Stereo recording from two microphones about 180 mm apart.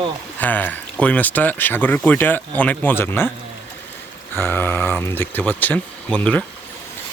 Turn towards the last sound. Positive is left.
turn(degrees=5)  # may be behind; listen again after turning